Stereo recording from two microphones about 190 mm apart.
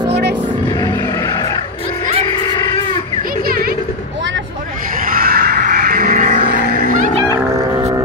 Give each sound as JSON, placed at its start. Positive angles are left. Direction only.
{"t": 5.0, "sound": "a sound", "side_deg": -50}
{"t": 6.5, "sound": "music", "side_deg": 40}
{"t": 7.3, "sound": "music", "side_deg": -20}